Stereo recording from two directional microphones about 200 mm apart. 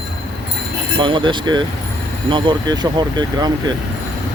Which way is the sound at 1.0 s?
25° right (ahead or behind).